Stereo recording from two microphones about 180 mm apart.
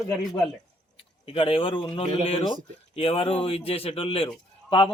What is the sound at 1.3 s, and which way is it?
A man's voice, 30° left (ahead or behind).